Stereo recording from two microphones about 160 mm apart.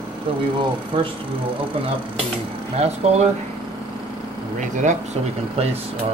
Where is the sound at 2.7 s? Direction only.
40° right (ahead or behind).